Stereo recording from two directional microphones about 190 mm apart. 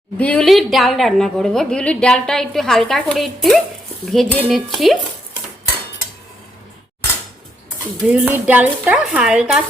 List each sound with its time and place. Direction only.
0.2 s a woman's voice: 5° left (ahead or behind)
8.0 s speech: 10° right (ahead or behind)